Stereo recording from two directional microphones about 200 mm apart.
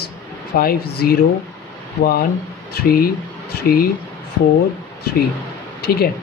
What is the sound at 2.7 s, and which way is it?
Speech, 45° left (ahead or behind).